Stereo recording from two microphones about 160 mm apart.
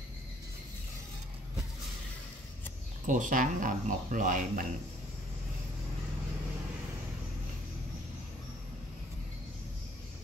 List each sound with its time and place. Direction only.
3.1 s speech: 55° right (ahead or behind)